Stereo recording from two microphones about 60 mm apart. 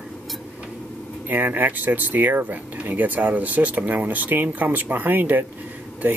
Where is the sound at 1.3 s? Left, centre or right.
Right.